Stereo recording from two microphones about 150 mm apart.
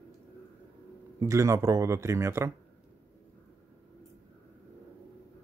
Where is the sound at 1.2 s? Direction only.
20° right (ahead or behind).